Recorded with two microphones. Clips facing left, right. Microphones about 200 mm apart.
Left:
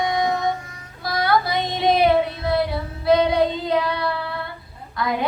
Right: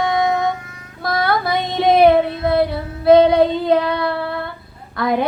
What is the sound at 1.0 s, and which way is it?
Child singing, 55° right (ahead or behind).